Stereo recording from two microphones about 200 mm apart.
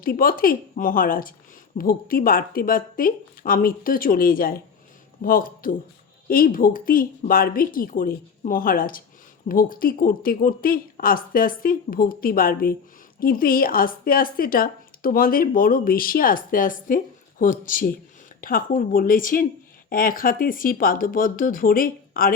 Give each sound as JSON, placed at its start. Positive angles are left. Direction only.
{"t": 0.0, "sound": "a woman's voice", "side_deg": 45}